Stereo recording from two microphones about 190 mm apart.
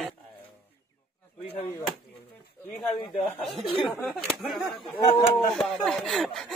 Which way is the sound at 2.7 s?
Centre (ahead or behind).